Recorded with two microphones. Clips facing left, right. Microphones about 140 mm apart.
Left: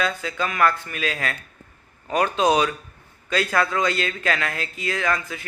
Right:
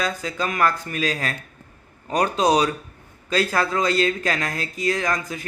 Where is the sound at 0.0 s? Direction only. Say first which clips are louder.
Even; 35° right (ahead or behind).